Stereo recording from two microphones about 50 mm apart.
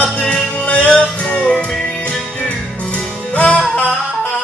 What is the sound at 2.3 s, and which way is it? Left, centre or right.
Music, left.